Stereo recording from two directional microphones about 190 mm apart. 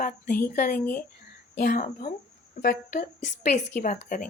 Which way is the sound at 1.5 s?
45° left (ahead or behind).